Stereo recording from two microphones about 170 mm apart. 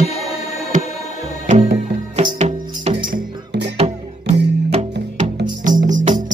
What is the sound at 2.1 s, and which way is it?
Music, 35° right (ahead or behind).